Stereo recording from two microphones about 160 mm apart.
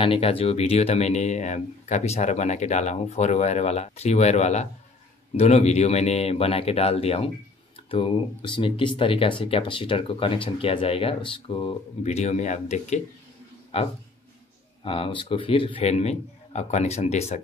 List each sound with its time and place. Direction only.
0.0 s speech: 35° left (ahead or behind)